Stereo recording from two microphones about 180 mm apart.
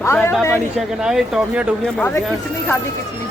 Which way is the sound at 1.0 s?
5° right (ahead or behind).